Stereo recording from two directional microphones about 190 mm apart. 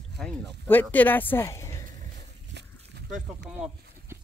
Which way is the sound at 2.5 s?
65° right (ahead or behind).